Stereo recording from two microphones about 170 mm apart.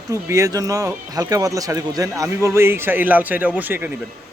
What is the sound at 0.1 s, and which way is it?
A man's voice, 20° right (ahead or behind).